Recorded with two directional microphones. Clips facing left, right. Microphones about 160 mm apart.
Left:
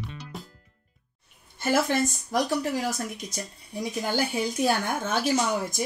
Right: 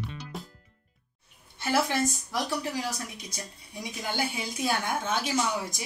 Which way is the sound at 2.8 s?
50° left (ahead or behind).